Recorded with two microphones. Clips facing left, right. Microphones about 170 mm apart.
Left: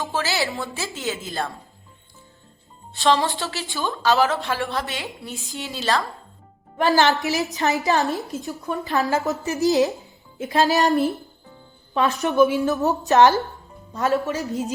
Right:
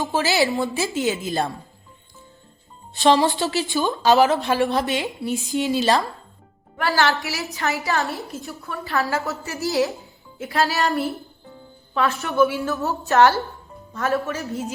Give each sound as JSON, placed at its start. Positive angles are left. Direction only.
{"t": 0.0, "sound": "speech", "side_deg": -20}
{"t": 2.9, "sound": "speech", "side_deg": -20}
{"t": 6.7, "sound": "a woman's voice", "side_deg": 20}